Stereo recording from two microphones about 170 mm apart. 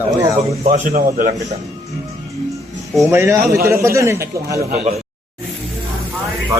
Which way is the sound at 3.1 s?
15° right (ahead or behind).